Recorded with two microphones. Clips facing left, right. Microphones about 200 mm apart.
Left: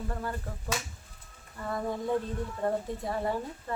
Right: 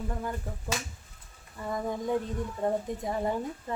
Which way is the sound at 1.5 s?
15° right (ahead or behind).